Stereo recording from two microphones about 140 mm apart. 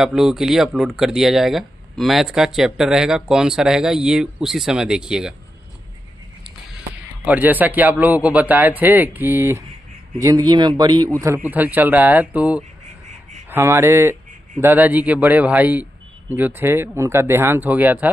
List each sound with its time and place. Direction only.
0.0 s speech: 5° right (ahead or behind)
7.2 s a man's voice: 10° right (ahead or behind)
10.2 s a man's voice: 30° right (ahead or behind)
11.3 s a man's voice: 10° right (ahead or behind)